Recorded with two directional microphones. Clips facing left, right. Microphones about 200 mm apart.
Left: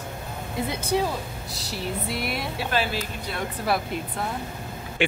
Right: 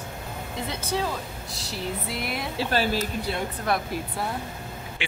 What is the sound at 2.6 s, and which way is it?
Speech, 40° right (ahead or behind).